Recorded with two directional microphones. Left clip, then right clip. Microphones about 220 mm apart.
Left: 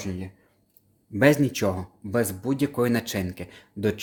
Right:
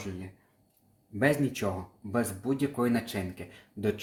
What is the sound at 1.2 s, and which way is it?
Speech, 40° left (ahead or behind).